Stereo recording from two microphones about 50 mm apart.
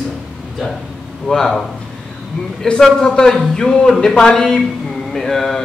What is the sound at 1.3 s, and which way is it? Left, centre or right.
Speech, centre.